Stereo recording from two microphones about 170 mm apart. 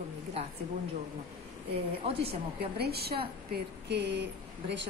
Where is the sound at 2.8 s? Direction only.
70° right (ahead or behind).